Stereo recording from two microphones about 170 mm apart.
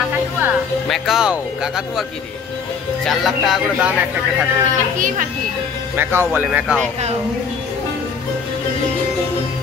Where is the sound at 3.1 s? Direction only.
Centre (ahead or behind).